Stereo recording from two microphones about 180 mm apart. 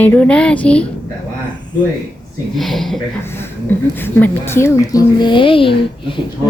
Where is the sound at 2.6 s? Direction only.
Centre (ahead or behind).